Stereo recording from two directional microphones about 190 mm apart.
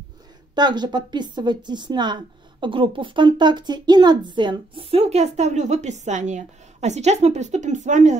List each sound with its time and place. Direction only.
0.6 s a woman's voice: 20° right (ahead or behind); by 8.2 s 40° right (ahead or behind)